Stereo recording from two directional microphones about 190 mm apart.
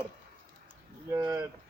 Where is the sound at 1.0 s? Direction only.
15° right (ahead or behind).